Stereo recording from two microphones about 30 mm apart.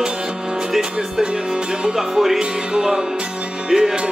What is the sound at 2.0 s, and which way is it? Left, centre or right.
Music, centre.